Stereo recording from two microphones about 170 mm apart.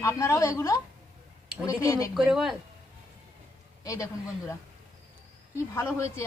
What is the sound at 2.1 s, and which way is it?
Speech, 5° right (ahead or behind).